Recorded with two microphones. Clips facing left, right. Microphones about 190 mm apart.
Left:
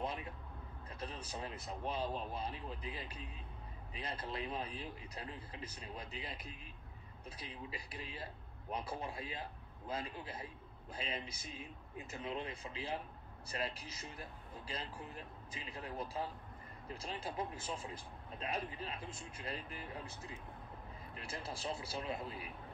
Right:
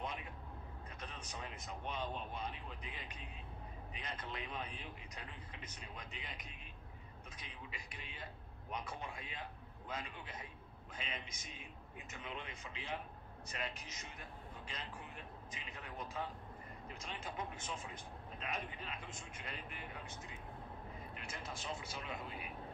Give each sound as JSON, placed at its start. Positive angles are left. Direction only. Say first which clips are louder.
{"t": 0.0, "sound": "vehicle", "louder": "left 4 dB", "side_deg": 30}
{"t": 0.9, "sound": "speech", "louder": "left 6 dB", "side_deg": 35}